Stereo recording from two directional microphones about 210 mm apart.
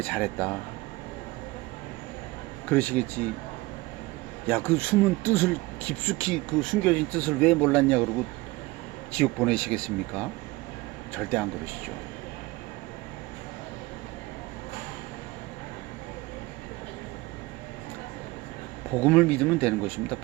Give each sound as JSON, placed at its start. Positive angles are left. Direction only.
{"t": 0.0, "sound": "speech", "side_deg": 5}
{"t": 2.6, "sound": "speech", "side_deg": 5}
{"t": 4.7, "sound": "speech", "side_deg": 5}
{"t": 9.1, "sound": "speech", "side_deg": 5}
{"t": 18.9, "sound": "speech", "side_deg": 5}